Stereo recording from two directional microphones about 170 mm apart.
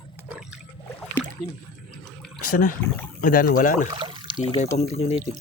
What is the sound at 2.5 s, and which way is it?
Speech, 50° left (ahead or behind).